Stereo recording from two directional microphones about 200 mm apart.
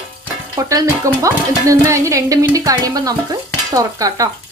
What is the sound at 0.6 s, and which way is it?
Stir, 15° right (ahead or behind).